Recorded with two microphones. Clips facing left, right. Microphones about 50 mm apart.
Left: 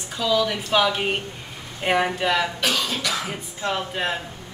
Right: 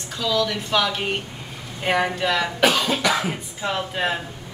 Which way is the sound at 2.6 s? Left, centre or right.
Right.